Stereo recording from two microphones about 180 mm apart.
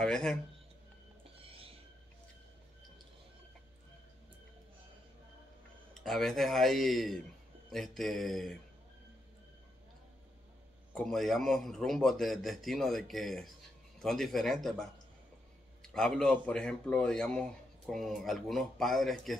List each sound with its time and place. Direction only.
0.0 s speech: 5° left (ahead or behind)
1.4 s a sound: 30° right (ahead or behind)
5.9 s speech: centre (ahead or behind)
11.0 s speech: centre (ahead or behind)